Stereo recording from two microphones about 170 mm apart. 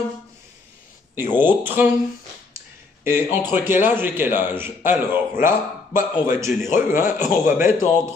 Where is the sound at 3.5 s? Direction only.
10° right (ahead or behind).